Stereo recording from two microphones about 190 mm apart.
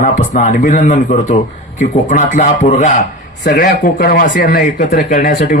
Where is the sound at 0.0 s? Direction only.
45° left (ahead or behind).